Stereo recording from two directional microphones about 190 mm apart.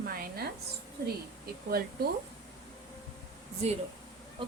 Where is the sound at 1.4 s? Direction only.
55° right (ahead or behind).